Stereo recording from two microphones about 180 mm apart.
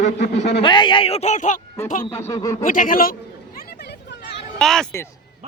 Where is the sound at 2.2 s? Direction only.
20° left (ahead or behind).